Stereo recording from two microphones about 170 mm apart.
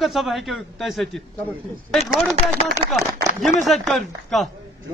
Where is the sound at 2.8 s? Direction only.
35° right (ahead or behind).